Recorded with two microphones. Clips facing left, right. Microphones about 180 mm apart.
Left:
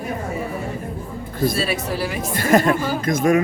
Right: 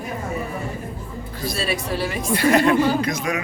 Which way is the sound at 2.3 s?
45° left (ahead or behind).